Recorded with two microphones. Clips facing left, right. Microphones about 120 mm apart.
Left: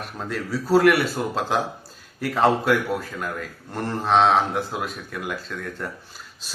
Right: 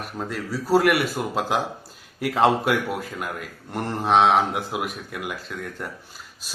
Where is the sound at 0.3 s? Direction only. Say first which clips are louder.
Left 1 dB; 5° right (ahead or behind).